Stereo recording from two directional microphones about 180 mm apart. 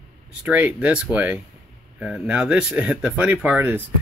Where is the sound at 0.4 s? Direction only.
10° right (ahead or behind).